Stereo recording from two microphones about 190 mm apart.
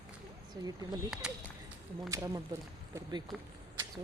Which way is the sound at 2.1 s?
15° right (ahead or behind).